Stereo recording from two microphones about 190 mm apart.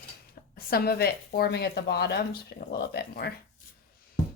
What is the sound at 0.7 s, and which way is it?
Speech, 55° left (ahead or behind).